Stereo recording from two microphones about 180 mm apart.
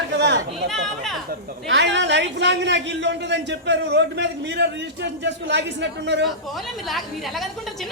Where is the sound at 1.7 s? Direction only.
75° right (ahead or behind).